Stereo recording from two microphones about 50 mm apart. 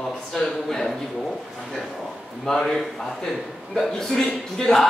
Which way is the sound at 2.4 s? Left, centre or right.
Centre.